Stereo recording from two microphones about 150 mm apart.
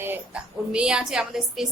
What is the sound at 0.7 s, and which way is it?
Speech, 5° right (ahead or behind).